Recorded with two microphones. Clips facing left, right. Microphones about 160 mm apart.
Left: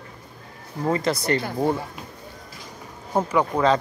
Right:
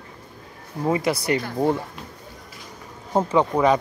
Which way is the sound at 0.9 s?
10° right (ahead or behind).